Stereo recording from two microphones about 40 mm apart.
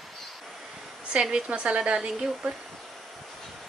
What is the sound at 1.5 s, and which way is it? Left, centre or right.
Speech, right.